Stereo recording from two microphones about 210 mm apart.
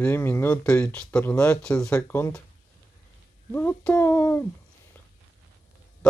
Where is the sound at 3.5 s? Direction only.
10° left (ahead or behind).